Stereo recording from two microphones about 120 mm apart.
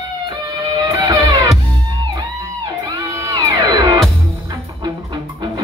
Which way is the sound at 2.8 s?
30° right (ahead or behind).